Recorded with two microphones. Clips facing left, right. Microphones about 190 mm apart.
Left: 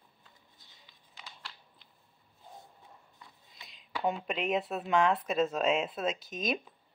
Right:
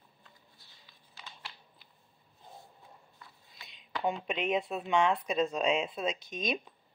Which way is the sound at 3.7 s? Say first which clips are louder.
Left 1 dB; centre (ahead or behind).